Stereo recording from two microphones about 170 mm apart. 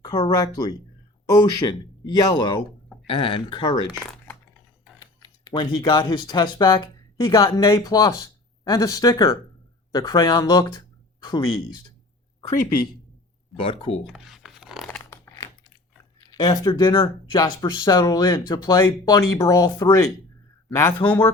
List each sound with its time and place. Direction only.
0.0 s speech: 20° left (ahead or behind)
4.9 s speech: 25° left (ahead or behind)
13.6 s speech: 35° left (ahead or behind)
14.1 s a sound: centre (ahead or behind)
15.1 s a sound: 15° left (ahead or behind)
16.3 s speech: 25° left (ahead or behind)